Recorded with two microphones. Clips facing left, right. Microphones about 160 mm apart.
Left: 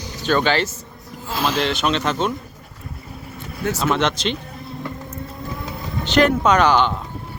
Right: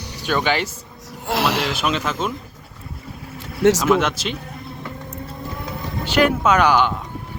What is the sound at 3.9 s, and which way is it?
Speech, 5° right (ahead or behind).